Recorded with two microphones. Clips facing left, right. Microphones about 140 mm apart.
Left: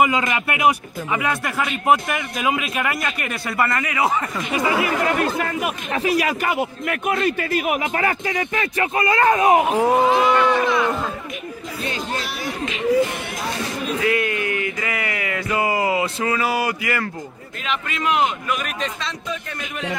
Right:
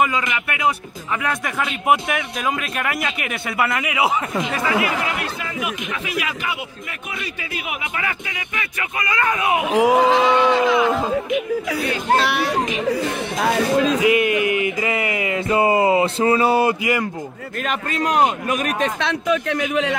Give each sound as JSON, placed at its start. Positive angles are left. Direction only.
{"t": 0.0, "sound": "speech", "side_deg": 25}
{"t": 1.1, "sound": "a man's voice", "side_deg": 5}
{"t": 4.5, "sound": "speech", "side_deg": 20}
{"t": 5.0, "sound": "speech", "side_deg": 45}
{"t": 9.9, "sound": "speech", "side_deg": -90}
{"t": 10.3, "sound": "a sound", "side_deg": -20}
{"t": 12.2, "sound": "speech", "side_deg": -75}
{"t": 13.4, "sound": "speech", "side_deg": -90}
{"t": 14.0, "sound": "a sound", "side_deg": -20}
{"t": 17.6, "sound": "a man's voice", "side_deg": -40}